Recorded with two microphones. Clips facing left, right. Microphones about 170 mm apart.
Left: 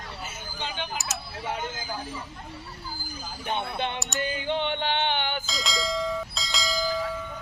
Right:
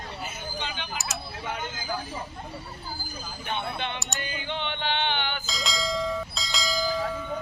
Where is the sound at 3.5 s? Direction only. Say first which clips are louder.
Left 2 dB; 45° left (ahead or behind).